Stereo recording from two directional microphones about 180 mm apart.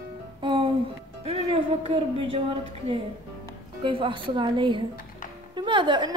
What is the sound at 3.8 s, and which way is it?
A woman's voice, 30° right (ahead or behind).